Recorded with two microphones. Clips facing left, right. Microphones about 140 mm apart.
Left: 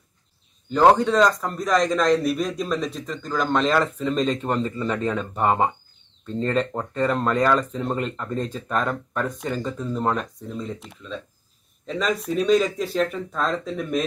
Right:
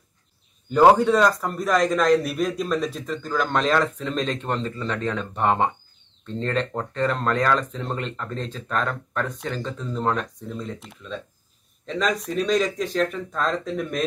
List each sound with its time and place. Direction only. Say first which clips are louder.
0.7 s speech: right 1 dB; 5° right (ahead or behind)